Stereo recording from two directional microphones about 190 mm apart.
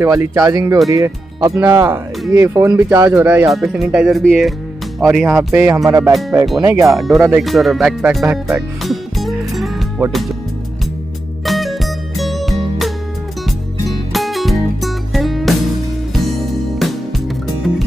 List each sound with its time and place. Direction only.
0.0 s speech: 15° right (ahead or behind)
3.5 s speech: centre (ahead or behind)
5.5 s speech: 10° right (ahead or behind)
6.9 s speech: centre (ahead or behind)
7.2 s speech: 10° right (ahead or behind)
7.4 s music: centre (ahead or behind)
11.4 s music: centre (ahead or behind)
14.1 s music: centre (ahead or behind)